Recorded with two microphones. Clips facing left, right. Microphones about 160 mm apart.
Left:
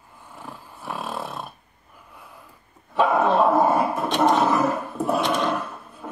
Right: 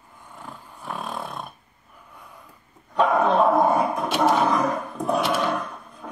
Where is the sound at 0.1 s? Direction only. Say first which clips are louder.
Left 1 dB; 10° left (ahead or behind).